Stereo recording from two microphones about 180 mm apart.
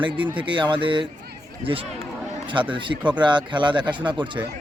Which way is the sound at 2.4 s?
25° right (ahead or behind).